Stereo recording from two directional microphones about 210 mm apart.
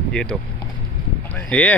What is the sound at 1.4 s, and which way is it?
Speech, 5° left (ahead or behind).